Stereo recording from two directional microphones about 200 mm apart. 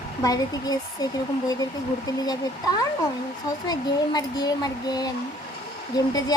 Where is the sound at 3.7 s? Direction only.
20° left (ahead or behind).